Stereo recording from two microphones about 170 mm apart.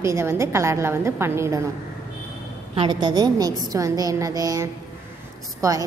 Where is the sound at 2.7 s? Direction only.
30° right (ahead or behind).